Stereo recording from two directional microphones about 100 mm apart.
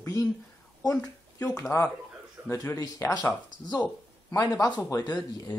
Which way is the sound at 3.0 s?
30° left (ahead or behind).